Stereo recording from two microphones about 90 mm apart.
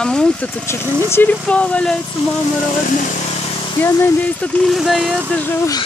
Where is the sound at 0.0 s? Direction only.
10° left (ahead or behind).